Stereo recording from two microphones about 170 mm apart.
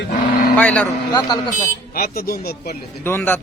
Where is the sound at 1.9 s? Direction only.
60° left (ahead or behind).